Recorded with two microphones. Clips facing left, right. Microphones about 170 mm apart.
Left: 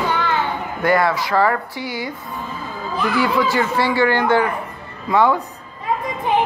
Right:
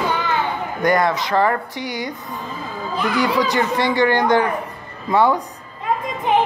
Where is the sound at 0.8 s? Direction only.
20° right (ahead or behind).